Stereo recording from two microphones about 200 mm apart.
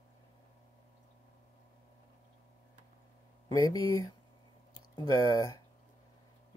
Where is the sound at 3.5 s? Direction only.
15° left (ahead or behind).